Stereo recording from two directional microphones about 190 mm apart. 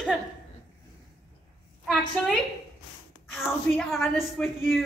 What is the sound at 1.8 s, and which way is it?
Speech, centre (ahead or behind).